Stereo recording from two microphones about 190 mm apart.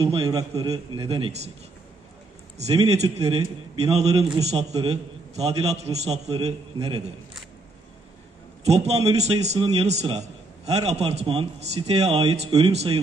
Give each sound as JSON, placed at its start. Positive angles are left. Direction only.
{"t": 0.0, "sound": "a man's voice", "side_deg": -20}
{"t": 2.5, "sound": "a man's voice", "side_deg": -35}
{"t": 8.6, "sound": "a man's voice", "side_deg": -35}